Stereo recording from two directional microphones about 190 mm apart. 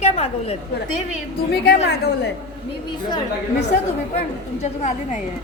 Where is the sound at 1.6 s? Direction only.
60° left (ahead or behind).